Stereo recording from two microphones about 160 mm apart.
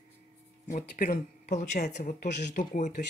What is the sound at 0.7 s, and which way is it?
Speech, 65° left (ahead or behind).